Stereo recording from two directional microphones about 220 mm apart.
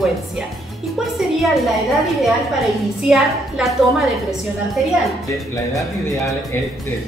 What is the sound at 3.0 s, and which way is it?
A woman's voice, centre (ahead or behind).